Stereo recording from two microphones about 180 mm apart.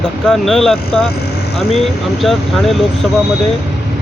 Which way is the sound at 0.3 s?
Centre (ahead or behind).